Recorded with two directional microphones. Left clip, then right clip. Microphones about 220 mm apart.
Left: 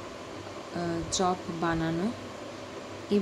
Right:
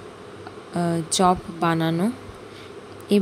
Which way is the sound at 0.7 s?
35° right (ahead or behind).